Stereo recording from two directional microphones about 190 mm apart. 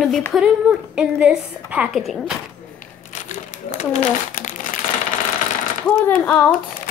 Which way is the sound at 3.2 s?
40° left (ahead or behind).